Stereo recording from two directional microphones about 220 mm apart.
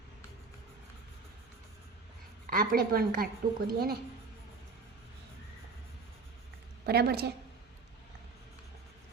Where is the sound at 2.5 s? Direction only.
40° right (ahead or behind).